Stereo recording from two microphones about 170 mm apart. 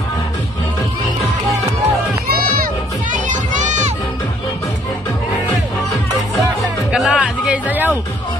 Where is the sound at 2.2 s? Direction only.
60° right (ahead or behind); by 3.9 s 45° right (ahead or behind).